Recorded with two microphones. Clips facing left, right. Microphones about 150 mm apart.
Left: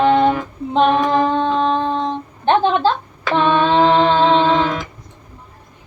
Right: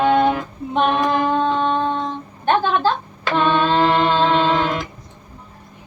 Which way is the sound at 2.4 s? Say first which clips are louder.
Left 3 dB; 25° left (ahead or behind).